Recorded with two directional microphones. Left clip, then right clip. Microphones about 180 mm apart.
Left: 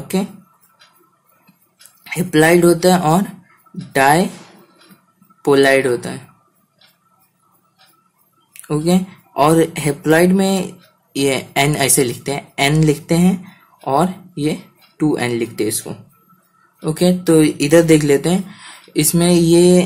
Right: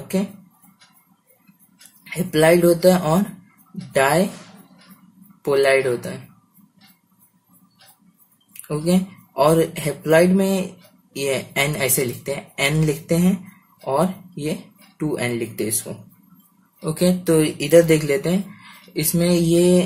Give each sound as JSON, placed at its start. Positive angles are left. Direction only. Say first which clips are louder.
{"t": 2.0, "sound": "speech", "louder": "left 3 dB", "side_deg": 35}
{"t": 5.4, "sound": "speech", "louder": "left 5 dB", "side_deg": 35}
{"t": 8.6, "sound": "speech", "louder": "left 4 dB", "side_deg": 30}